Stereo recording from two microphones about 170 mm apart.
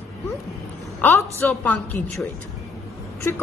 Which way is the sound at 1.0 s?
10° left (ahead or behind).